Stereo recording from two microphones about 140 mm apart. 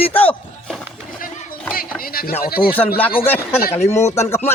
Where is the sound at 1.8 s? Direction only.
90° left.